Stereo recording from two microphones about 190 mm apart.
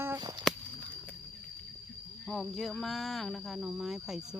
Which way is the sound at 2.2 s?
Centre (ahead or behind).